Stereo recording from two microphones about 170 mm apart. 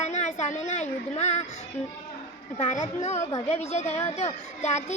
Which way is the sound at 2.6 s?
40° left (ahead or behind).